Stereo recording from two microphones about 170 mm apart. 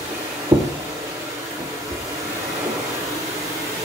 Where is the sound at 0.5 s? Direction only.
15° right (ahead or behind).